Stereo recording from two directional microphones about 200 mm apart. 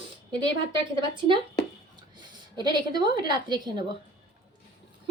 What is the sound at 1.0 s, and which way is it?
A woman's voice, 25° right (ahead or behind).